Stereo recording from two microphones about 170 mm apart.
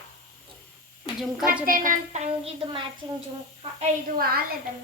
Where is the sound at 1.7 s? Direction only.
55° right (ahead or behind); by 2.8 s 35° right (ahead or behind).